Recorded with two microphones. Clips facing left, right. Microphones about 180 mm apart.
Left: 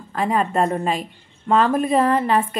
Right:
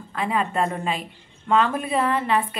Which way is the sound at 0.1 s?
40° left (ahead or behind).